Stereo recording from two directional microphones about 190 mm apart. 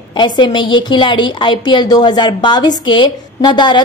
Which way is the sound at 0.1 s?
25° left (ahead or behind).